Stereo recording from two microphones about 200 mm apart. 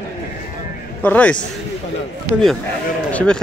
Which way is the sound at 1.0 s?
5° left (ahead or behind).